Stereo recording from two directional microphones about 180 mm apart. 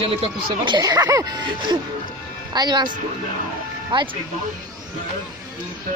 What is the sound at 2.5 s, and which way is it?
Speech, 25° right (ahead or behind).